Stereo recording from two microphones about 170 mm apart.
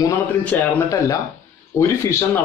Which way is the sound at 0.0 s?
15° left (ahead or behind).